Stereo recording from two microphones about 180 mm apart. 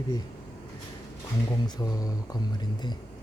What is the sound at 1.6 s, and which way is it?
Speech, 20° left (ahead or behind).